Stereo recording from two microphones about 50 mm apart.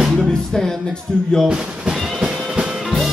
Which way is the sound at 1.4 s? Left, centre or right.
Centre.